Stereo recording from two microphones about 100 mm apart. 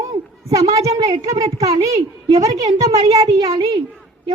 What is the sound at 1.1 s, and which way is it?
Speech, 75° right (ahead or behind).